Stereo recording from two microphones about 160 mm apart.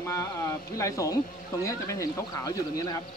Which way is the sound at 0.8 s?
20° left (ahead or behind).